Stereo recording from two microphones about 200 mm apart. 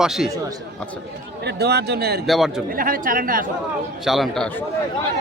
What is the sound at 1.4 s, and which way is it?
Speech, 55° right (ahead or behind).